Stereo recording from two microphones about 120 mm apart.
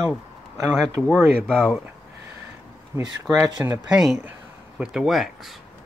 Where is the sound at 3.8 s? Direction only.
5° right (ahead or behind).